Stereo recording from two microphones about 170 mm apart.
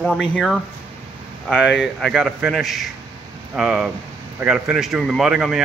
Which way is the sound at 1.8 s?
Centre (ahead or behind).